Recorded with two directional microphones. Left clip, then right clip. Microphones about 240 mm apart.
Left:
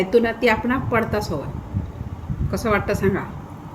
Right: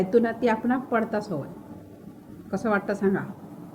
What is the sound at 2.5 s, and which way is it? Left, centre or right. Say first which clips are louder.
Speech: left 5 dB; centre.